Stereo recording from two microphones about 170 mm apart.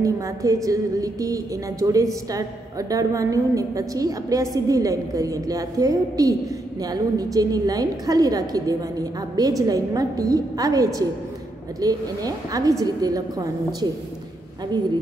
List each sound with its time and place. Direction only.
0.0 s a woman's voice: 20° right (ahead or behind)